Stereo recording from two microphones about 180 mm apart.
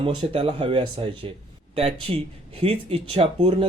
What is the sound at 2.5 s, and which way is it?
Speech, 30° right (ahead or behind).